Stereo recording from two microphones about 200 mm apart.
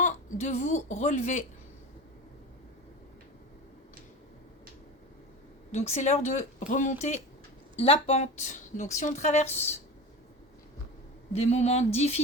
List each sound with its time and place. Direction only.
0.0 s speech: 40° left (ahead or behind)
5.7 s speech: 35° left (ahead or behind)
11.3 s speech: 35° left (ahead or behind)